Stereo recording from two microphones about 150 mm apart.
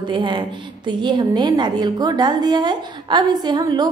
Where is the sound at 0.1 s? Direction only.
35° right (ahead or behind).